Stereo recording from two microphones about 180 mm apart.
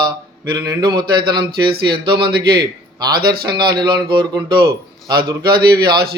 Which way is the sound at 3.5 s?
25° right (ahead or behind).